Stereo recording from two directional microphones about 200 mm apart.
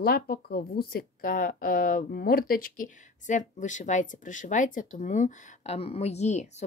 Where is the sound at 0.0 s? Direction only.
50° left (ahead or behind).